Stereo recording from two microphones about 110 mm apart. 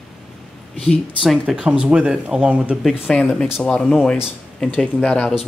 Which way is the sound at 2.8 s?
5° left (ahead or behind).